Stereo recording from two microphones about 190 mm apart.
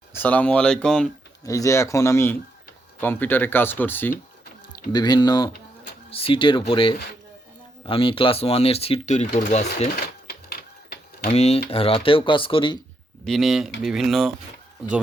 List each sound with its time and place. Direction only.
0.2 s speech: 10° left (ahead or behind)
1.5 s speech: 15° left (ahead or behind)
4.9 s speech: 20° left (ahead or behind)
11.3 s speech: 35° left (ahead or behind)
13.2 s speech: centre (ahead or behind)